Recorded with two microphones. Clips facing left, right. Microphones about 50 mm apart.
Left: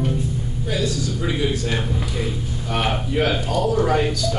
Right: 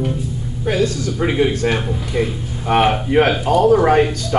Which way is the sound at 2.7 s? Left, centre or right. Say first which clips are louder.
Right 9 dB; right.